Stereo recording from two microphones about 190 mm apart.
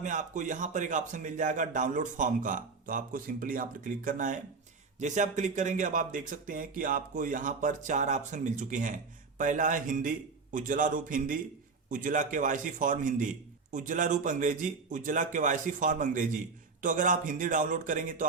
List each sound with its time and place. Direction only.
0.0 s a man's voice: 40° right (ahead or behind)